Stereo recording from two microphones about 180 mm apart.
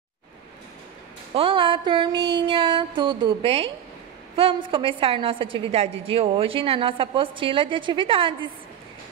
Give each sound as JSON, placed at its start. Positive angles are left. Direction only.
{"t": 1.3, "sound": "a woman's voice", "side_deg": -30}